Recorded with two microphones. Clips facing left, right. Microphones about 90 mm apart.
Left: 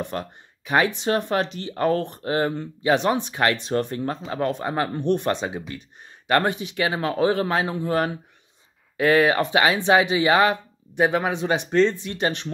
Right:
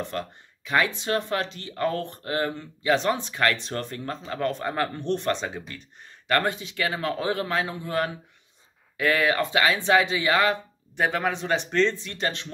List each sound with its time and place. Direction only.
0.0 s speech: 15° left (ahead or behind)
12.0 s speech: 20° left (ahead or behind)